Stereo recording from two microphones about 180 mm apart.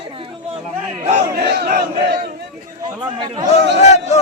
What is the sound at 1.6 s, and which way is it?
Battle cry, 60° right (ahead or behind).